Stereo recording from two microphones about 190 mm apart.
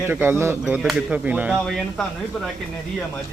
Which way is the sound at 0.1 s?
10° right (ahead or behind).